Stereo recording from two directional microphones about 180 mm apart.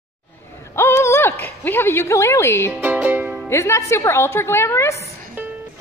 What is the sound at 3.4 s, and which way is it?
Speech, 15° left (ahead or behind).